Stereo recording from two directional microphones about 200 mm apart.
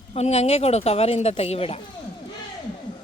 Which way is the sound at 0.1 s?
30° left (ahead or behind).